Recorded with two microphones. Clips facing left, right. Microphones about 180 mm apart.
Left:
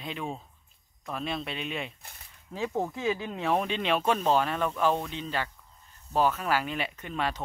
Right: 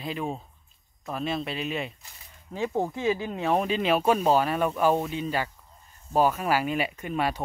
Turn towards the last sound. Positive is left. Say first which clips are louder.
# right 4 dB
turn(degrees=-10)  # may be behind; listen again after turning